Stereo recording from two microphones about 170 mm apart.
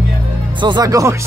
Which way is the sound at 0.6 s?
25° right (ahead or behind).